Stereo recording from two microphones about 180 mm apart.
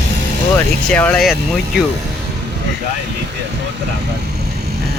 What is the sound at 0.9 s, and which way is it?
Speech, 10° left (ahead or behind).